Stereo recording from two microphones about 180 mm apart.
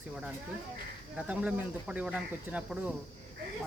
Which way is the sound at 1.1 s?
5° right (ahead or behind).